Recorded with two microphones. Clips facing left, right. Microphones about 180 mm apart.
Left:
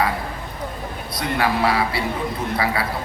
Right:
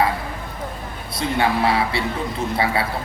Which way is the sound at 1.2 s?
25° right (ahead or behind).